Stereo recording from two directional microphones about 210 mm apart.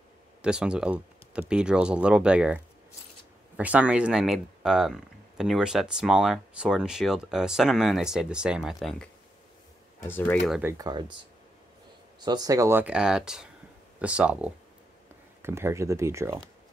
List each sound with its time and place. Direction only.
0.4 s speech: 5° right (ahead or behind)
10.0 s speech: 10° left (ahead or behind)
10.6 s speech: 20° right (ahead or behind)
12.3 s speech: 15° right (ahead or behind)